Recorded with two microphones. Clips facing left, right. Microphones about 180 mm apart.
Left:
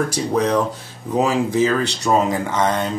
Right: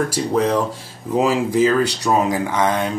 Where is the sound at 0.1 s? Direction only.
5° right (ahead or behind).